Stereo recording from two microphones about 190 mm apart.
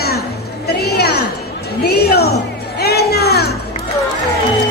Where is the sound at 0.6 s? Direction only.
55° left (ahead or behind).